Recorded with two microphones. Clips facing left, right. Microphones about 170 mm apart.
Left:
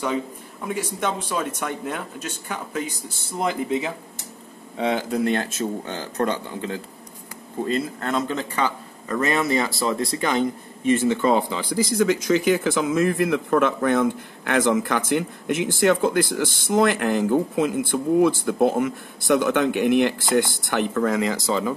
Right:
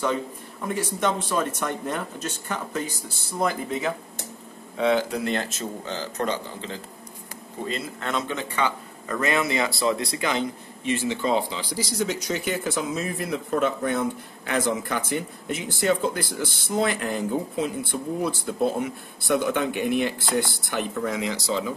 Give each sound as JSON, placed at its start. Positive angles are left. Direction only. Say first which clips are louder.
{"t": 1.3, "sound": "speech", "louder": "right 1 dB", "side_deg": 10}
{"t": 3.3, "sound": "speech", "louder": "left 2 dB", "side_deg": 20}
{"t": 4.7, "sound": "speech", "louder": "even", "side_deg": 45}
{"t": 12.4, "sound": "speech", "louder": "left 6 dB", "side_deg": 90}
{"t": 13.2, "sound": "speech", "louder": "left 5 dB", "side_deg": 65}
{"t": 15.1, "sound": "speech", "louder": "left 6 dB", "side_deg": 75}
{"t": 16.3, "sound": "speech", "louder": "left 5 dB", "side_deg": 90}
{"t": 16.7, "sound": "speech", "louder": "left 5 dB", "side_deg": 60}
{"t": 18.3, "sound": "speech", "louder": "left 5 dB", "side_deg": 55}
{"t": 19.2, "sound": "speech", "louder": "left 4 dB", "side_deg": 70}